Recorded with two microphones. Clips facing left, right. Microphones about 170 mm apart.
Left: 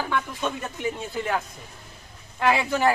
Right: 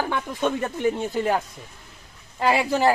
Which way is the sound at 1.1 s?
35° right (ahead or behind).